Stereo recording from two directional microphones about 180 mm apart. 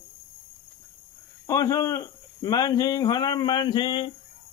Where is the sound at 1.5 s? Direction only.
20° left (ahead or behind).